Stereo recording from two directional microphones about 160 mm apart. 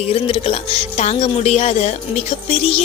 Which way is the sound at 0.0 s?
35° left (ahead or behind).